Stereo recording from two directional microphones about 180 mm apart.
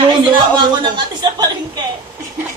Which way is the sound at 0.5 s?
25° right (ahead or behind).